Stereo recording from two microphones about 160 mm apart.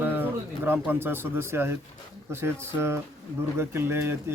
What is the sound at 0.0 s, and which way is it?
A man's voice, 10° right (ahead or behind).